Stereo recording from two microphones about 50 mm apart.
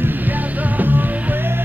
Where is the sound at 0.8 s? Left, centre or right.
Right.